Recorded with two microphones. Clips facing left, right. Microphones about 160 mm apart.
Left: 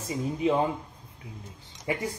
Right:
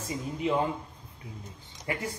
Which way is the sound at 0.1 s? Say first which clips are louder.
Left 3 dB; 15° left (ahead or behind).